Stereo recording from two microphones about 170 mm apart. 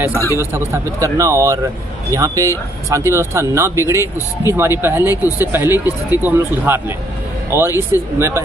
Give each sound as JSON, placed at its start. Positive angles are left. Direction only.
{"t": 0.1, "sound": "speech", "side_deg": 15}
{"t": 0.4, "sound": "a man's voice", "side_deg": -15}